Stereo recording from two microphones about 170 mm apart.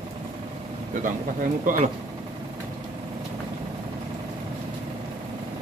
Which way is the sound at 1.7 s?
55° right (ahead or behind).